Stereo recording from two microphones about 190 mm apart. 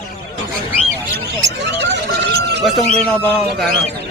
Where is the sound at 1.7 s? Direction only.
65° right (ahead or behind).